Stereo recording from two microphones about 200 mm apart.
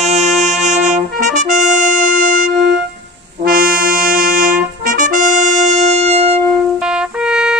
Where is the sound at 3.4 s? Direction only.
45° right (ahead or behind).